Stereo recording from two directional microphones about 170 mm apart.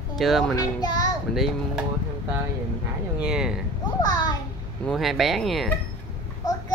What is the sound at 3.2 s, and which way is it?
Speech, 5° right (ahead or behind).